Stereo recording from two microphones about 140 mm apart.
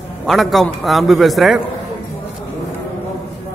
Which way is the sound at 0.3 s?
Centre (ahead or behind).